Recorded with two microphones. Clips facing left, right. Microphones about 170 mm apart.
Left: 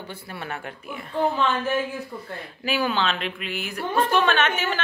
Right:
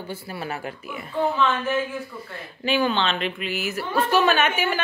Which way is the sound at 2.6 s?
5° left (ahead or behind).